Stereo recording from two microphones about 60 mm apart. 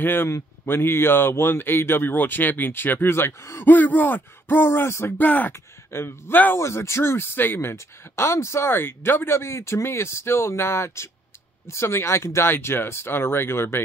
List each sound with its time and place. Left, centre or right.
0.0 s speech: left
3.6 s speech: left
5.1 s speech: left
5.5 s speech: left